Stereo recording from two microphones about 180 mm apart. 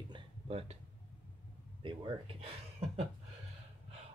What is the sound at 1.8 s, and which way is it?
Speech, 30° right (ahead or behind).